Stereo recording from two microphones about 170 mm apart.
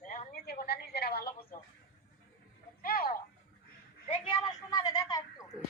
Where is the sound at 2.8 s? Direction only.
60° left (ahead or behind).